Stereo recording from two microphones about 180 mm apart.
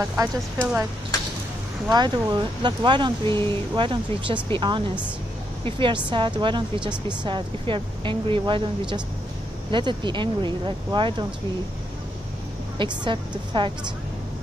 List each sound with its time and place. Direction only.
0.0 s speech: 10° right (ahead or behind)
1.9 s speech: 25° right (ahead or behind)
12.7 s speech: 25° right (ahead or behind)